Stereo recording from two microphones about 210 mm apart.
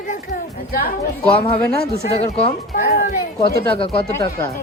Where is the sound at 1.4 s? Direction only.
30° left (ahead or behind).